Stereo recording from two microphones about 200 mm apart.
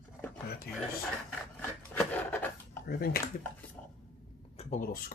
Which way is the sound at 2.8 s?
50° left (ahead or behind).